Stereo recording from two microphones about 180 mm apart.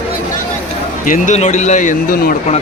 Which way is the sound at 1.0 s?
45° left (ahead or behind).